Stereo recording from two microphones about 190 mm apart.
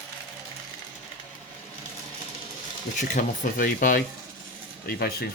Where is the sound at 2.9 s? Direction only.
45° left (ahead or behind).